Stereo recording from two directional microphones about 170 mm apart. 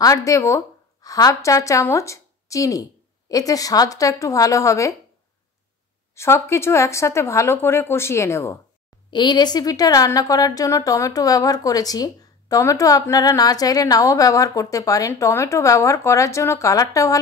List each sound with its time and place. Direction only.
0.0 s a woman's voice: 20° left (ahead or behind)
6.1 s speech: 15° left (ahead or behind)
9.1 s a woman's voice: 25° left (ahead or behind)